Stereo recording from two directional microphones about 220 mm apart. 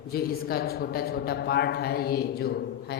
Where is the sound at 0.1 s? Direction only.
45° left (ahead or behind).